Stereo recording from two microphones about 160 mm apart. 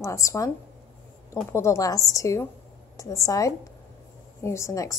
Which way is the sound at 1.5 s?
20° left (ahead or behind).